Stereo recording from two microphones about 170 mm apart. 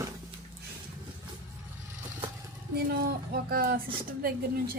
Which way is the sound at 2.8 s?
60° right (ahead or behind).